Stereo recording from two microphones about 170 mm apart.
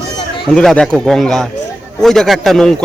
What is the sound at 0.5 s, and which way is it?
Speech, 5° left (ahead or behind).